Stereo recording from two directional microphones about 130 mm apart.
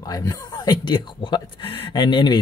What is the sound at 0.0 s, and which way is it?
Speech, 30° left (ahead or behind).